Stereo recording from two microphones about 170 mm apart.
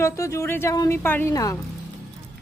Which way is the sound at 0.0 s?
20° left (ahead or behind).